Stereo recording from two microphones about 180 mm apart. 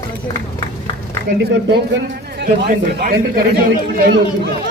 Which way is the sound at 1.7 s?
70° right (ahead or behind).